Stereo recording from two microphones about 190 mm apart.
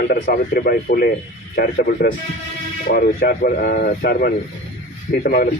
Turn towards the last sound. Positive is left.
turn(degrees=50)  # may be behind; listen again after turning